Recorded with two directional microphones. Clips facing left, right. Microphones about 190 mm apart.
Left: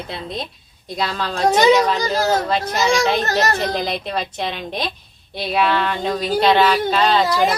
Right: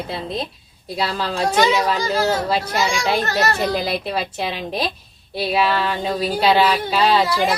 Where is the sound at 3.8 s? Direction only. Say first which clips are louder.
Right 1 dB; 5° right (ahead or behind).